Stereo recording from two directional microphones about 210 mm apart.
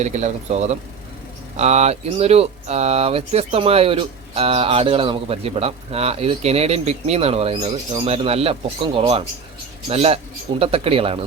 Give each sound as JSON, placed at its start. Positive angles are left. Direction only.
{"t": 0.0, "sound": "speech", "side_deg": -30}